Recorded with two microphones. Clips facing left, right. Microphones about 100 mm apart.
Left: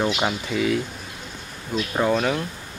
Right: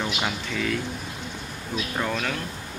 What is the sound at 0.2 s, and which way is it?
Speech, 15° left (ahead or behind).